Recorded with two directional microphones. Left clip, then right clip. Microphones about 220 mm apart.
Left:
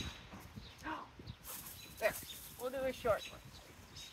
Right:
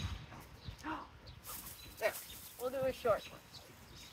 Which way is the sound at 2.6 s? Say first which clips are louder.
Right 2 dB; 20° right (ahead or behind).